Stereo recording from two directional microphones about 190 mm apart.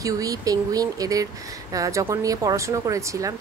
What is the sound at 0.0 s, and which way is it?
Speech, 20° right (ahead or behind).